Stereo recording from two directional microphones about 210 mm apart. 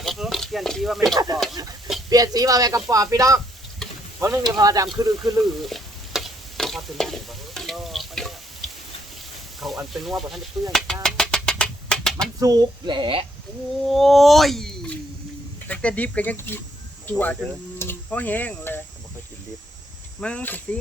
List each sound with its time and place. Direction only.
0.0 s a sound: centre (ahead or behind)
1.1 s speech: 20° right (ahead or behind)
5.4 s stir: centre (ahead or behind)
9.6 s speech: centre (ahead or behind)
11.0 s a sound: 5° left (ahead or behind)
12.4 s speech: 20° right (ahead or behind)
13.8 s speech: centre (ahead or behind)
17.7 s a sound: 10° left (ahead or behind)
20.2 s speech: 5° left (ahead or behind)